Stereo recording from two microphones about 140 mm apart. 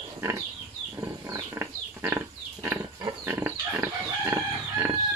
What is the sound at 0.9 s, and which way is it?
Pig, 20° right (ahead or behind).